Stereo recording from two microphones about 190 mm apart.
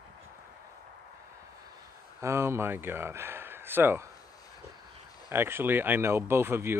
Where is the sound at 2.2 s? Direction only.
15° right (ahead or behind).